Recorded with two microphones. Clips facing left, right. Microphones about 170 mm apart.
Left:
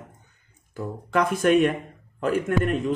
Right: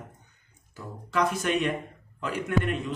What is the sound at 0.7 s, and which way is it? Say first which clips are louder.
A man's voice: left 6 dB; 55° left (ahead or behind).